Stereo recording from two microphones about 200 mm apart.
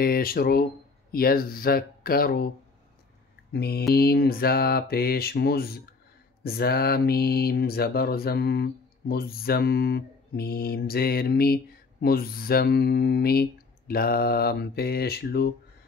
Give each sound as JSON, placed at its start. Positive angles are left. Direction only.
{"t": 0.0, "sound": "speech", "side_deg": 50}
{"t": 3.5, "sound": "speech", "side_deg": 50}